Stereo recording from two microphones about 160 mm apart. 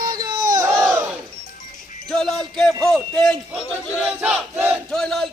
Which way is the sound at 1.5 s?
55° left (ahead or behind).